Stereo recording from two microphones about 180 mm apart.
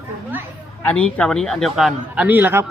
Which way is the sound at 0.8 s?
10° left (ahead or behind).